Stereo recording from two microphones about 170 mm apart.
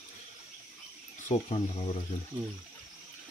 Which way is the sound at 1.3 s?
35° left (ahead or behind).